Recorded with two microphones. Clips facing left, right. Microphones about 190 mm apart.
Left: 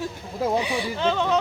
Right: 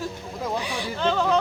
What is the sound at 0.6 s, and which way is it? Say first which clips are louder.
Speech: left 2 dB; 5° left (ahead or behind).